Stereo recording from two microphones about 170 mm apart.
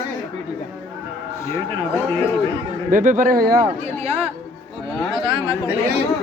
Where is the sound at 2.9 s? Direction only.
50° right (ahead or behind).